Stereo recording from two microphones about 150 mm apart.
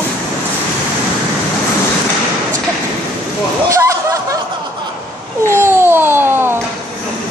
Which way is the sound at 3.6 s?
20° right (ahead or behind).